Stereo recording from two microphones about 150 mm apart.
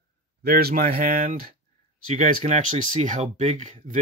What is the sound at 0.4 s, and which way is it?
Speech, 90° right.